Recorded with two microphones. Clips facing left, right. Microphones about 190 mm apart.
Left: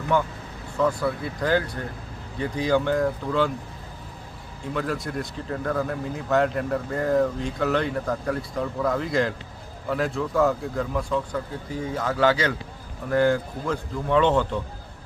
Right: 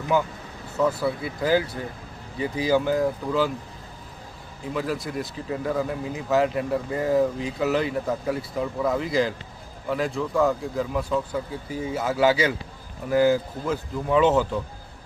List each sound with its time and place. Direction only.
0.1 s speech: 5° right (ahead or behind)
4.7 s speech: 5° right (ahead or behind)